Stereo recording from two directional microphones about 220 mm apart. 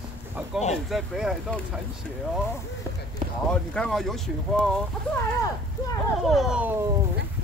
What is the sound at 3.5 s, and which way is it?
Speech, 5° left (ahead or behind).